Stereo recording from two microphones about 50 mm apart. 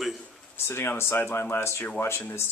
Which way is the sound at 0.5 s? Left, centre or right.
Left.